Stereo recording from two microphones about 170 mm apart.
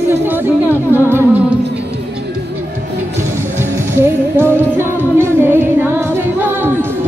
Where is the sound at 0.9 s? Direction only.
15° right (ahead or behind).